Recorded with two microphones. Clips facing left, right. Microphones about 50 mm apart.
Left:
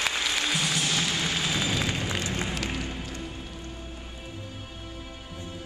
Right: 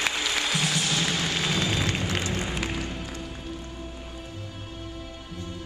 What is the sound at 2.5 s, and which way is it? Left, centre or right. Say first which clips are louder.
Music: right 1 dB; centre.